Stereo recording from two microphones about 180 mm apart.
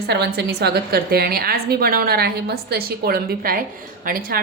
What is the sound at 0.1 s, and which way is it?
A woman's voice, 65° right (ahead or behind).